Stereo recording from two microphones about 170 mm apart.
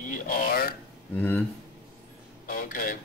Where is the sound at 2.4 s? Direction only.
55° left (ahead or behind).